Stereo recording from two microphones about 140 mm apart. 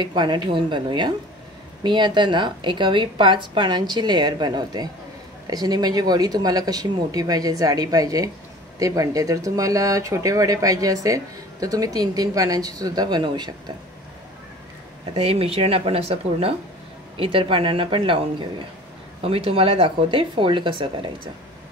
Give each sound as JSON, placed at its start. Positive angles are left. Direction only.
{"t": 0.0, "sound": "a woman's voice", "side_deg": -30}
{"t": 15.1, "sound": "a woman's voice", "side_deg": -45}